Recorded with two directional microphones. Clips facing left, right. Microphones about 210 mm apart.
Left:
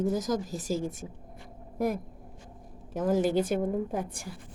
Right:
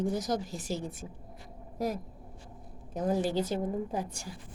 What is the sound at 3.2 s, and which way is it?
Speech, 55° left (ahead or behind).